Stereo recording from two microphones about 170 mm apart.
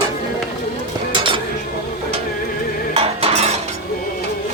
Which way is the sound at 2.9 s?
35° right (ahead or behind).